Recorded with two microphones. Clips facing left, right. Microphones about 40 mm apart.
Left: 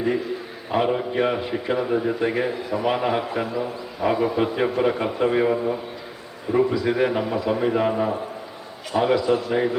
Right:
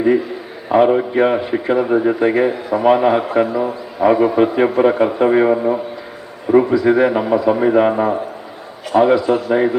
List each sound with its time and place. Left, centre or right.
0.7 s a man's voice: right